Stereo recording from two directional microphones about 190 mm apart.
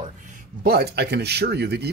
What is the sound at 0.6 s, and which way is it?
Speech, 55° right (ahead or behind).